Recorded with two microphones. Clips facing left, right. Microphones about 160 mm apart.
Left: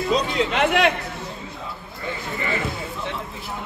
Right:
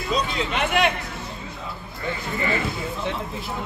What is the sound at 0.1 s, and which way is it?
Speech, 85° left.